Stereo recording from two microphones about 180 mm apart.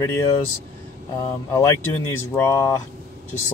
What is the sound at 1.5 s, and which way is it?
Speech, 15° left (ahead or behind).